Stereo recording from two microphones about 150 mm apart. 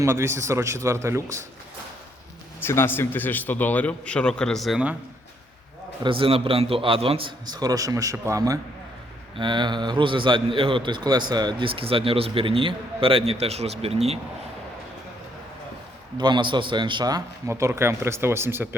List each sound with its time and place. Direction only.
0.0 s a man's voice: 15° right (ahead or behind)
2.6 s a man's voice: 15° left (ahead or behind); by 4.9 s 5° right (ahead or behind)
6.0 s a man's voice: 35° right (ahead or behind)
16.1 s a man's voice: 30° right (ahead or behind); by 18.7 s 15° right (ahead or behind)